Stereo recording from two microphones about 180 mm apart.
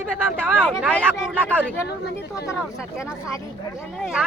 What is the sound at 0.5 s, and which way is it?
Speech, centre (ahead or behind).